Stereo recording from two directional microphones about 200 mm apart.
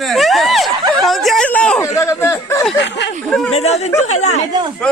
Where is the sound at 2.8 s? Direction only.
60° left (ahead or behind).